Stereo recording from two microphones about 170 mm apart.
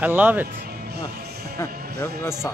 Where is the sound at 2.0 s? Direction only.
15° left (ahead or behind).